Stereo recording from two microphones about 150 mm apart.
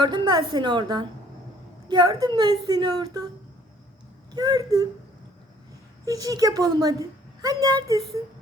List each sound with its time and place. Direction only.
0.0 s a woman's voice: 30° right (ahead or behind)
4.4 s a woman's voice: 25° right (ahead or behind)
6.1 s a woman's voice: 25° right (ahead or behind)